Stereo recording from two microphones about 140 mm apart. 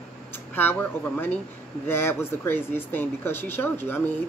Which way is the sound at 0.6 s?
15° left (ahead or behind).